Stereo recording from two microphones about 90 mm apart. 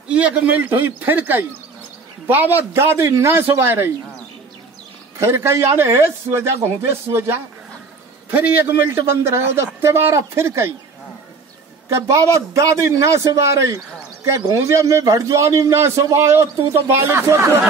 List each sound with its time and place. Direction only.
0.1 s a man's voice: 15° right (ahead or behind)
5.2 s a man's voice: 30° right (ahead or behind)
11.9 s a man's voice: 35° right (ahead or behind)